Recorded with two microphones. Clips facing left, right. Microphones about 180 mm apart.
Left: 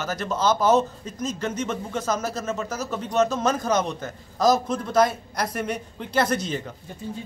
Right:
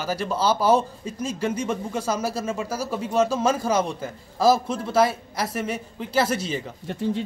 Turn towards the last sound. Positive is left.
turn(degrees=-75)  # may be behind; listen again after turning